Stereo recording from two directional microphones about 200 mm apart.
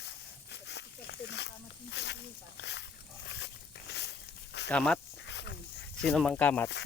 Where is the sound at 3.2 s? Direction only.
60° left (ahead or behind).